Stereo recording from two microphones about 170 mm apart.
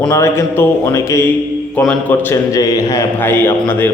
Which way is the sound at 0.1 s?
15° left (ahead or behind).